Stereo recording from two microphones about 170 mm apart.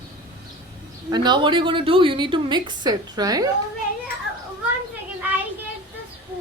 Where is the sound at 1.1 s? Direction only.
25° right (ahead or behind).